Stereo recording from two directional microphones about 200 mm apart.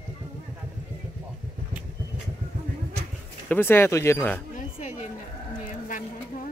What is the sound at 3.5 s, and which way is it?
Speech, 10° left (ahead or behind).